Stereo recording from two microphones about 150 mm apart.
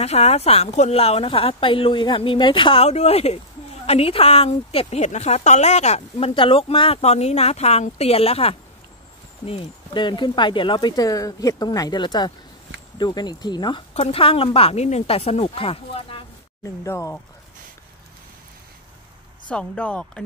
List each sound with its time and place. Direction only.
0.0 s a woman's voice: 45° left (ahead or behind)
13.9 s speech: 40° left (ahead or behind)
16.6 s speech: 20° left (ahead or behind)
19.5 s speech: 5° left (ahead or behind)